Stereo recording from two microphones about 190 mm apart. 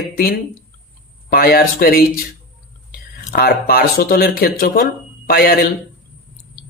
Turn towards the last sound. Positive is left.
turn(degrees=55)  # may be behind; listen again after turning